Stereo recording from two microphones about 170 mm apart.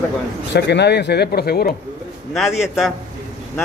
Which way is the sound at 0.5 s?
90° left.